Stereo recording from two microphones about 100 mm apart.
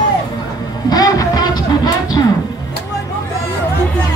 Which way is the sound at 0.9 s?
40° left (ahead or behind).